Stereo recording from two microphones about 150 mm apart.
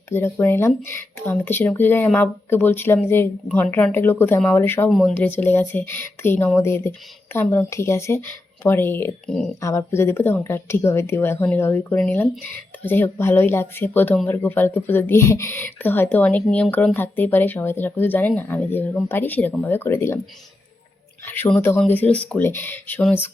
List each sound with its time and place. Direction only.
0.1 s speech: 15° left (ahead or behind)
4.9 s speech: centre (ahead or behind)
5.1 s speech: 10° left (ahead or behind)
21.2 s speech: 15° left (ahead or behind)